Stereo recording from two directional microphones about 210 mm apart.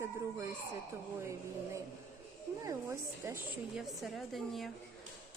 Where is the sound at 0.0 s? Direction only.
15° right (ahead or behind).